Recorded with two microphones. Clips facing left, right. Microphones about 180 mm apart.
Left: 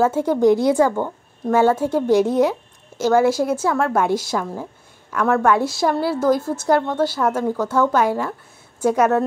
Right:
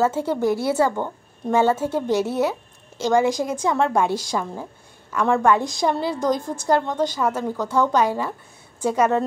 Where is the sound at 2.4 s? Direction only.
10° left (ahead or behind).